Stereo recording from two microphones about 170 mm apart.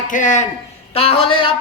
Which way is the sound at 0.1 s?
50° left (ahead or behind).